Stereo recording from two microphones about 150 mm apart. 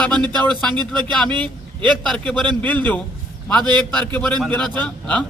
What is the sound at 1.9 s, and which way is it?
A man's voice, 5° left (ahead or behind).